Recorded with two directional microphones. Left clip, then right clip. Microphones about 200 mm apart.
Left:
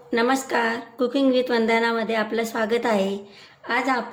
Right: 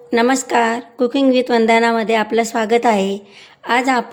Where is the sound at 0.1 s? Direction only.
35° right (ahead or behind).